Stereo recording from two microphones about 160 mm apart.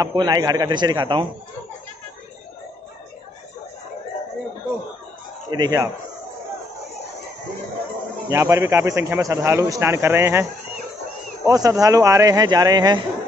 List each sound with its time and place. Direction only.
0.0 s speech: 25° right (ahead or behind)
5.5 s speech: 25° right (ahead or behind)
8.3 s a man's voice: 20° right (ahead or behind)
11.4 s speech: 20° right (ahead or behind)